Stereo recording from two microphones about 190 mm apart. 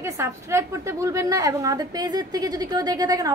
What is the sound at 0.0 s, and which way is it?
A woman's voice, 15° right (ahead or behind).